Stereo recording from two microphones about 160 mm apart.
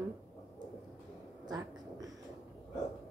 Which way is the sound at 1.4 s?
25° right (ahead or behind).